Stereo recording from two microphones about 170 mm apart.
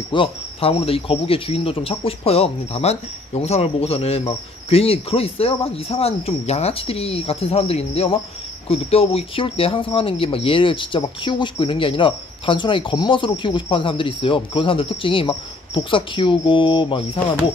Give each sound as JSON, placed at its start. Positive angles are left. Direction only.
{"t": 0.1, "sound": "speech", "side_deg": 30}